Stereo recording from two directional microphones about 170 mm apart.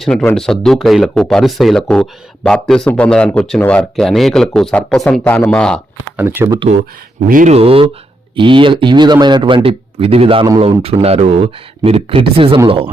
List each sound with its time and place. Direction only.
0.0 s speech: 5° left (ahead or behind)
6.1 s speech: 15° right (ahead or behind)
7.3 s speech: 55° right (ahead or behind)
7.5 s speech: 35° right (ahead or behind)